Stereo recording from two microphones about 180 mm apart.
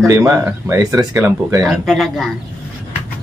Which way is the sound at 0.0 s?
15° right (ahead or behind).